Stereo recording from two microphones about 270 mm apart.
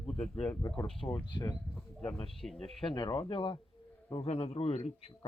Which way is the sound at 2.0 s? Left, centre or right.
Centre.